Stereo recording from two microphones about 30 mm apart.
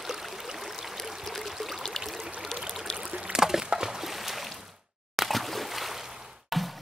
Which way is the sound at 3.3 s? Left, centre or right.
Centre.